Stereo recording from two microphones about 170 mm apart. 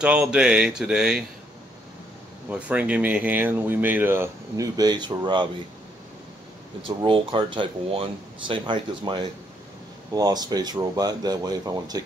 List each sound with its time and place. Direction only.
0.0 s speech: 5° right (ahead or behind)
2.5 s speech: 5° right (ahead or behind); by 5.5 s 25° right (ahead or behind)
7.0 s speech: 30° right (ahead or behind)